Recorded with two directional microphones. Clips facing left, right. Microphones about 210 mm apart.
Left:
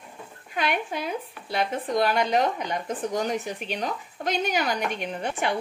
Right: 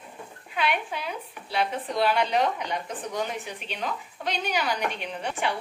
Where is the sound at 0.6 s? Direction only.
45° left (ahead or behind).